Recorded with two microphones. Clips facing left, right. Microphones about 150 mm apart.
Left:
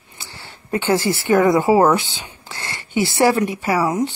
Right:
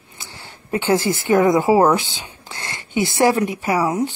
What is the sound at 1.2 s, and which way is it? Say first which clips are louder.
Speech: left 1 dB; 15° right (ahead or behind).